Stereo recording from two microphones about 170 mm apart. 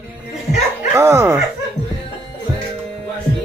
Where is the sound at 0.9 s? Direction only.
15° right (ahead or behind).